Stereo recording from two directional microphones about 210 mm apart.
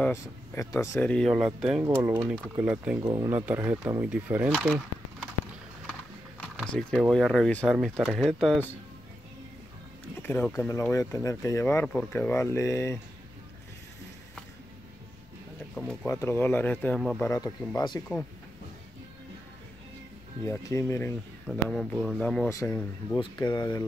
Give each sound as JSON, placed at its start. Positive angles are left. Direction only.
{"t": 0.0, "sound": "speech", "side_deg": 15}
{"t": 3.0, "sound": "speech", "side_deg": -20}
{"t": 3.3, "sound": "speech", "side_deg": -10}
{"t": 6.6, "sound": "speech", "side_deg": 5}
{"t": 10.2, "sound": "speech", "side_deg": 10}
{"t": 15.7, "sound": "speech", "side_deg": 5}
{"t": 17.2, "sound": "speech", "side_deg": 15}
{"t": 20.4, "sound": "speech", "side_deg": 15}
{"t": 21.5, "sound": "speech", "side_deg": 0}